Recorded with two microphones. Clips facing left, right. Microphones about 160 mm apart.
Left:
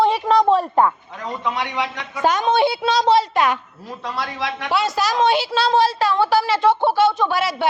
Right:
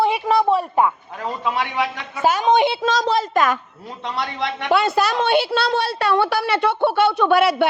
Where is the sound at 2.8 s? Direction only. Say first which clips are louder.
Left 3 dB; 45° right (ahead or behind).